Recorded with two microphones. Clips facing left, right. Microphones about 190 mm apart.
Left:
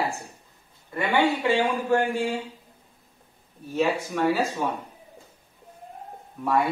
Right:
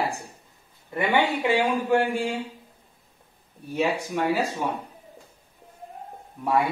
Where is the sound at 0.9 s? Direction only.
20° right (ahead or behind).